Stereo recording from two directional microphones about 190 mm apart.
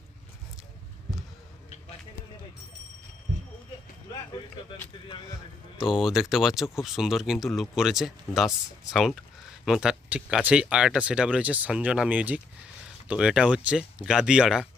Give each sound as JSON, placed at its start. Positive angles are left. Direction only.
{"t": 5.7, "sound": "speech", "side_deg": -5}